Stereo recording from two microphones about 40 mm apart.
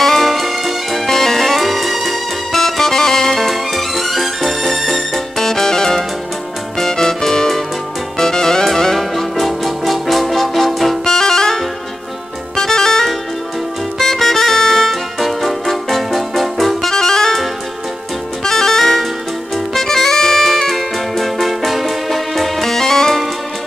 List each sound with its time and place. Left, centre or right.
0.0 s music: centre
1.0 s music: centre
5.4 s music: centre
11.1 s music: centre